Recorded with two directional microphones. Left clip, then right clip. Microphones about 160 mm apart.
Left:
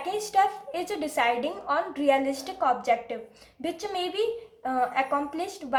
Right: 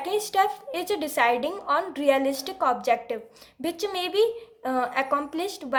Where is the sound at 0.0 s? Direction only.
40° right (ahead or behind).